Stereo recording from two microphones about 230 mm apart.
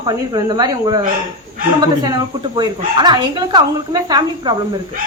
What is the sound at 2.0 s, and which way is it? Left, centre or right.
Speech, centre.